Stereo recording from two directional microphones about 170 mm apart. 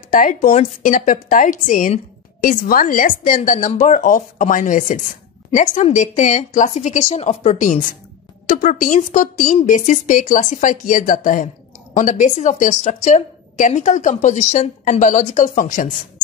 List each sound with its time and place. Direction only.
0.1 s a woman's voice: 50° left (ahead or behind)